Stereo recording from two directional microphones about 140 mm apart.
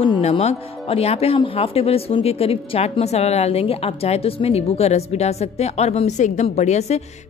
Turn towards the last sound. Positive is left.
turn(degrees=50)  # may be behind; listen again after turning